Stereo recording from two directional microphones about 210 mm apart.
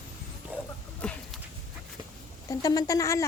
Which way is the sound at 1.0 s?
5° left (ahead or behind).